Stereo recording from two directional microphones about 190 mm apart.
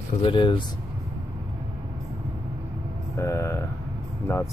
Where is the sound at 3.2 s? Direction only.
15° left (ahead or behind).